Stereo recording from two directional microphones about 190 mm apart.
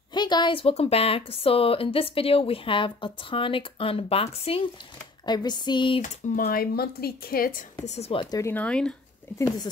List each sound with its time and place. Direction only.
0.1 s speech: 25° left (ahead or behind)
6.0 s speech: 50° left (ahead or behind)
7.8 s speech: 35° left (ahead or behind); by 8.9 s 5° left (ahead or behind)